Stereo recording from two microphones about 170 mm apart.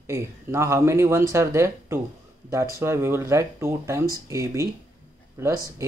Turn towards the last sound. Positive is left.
turn(degrees=-20)  # may be behind; listen again after turning